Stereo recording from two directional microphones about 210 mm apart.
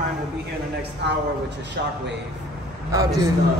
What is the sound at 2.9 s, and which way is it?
Speech, 15° right (ahead or behind).